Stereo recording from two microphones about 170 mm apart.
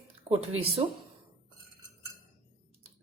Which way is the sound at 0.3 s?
35° right (ahead or behind).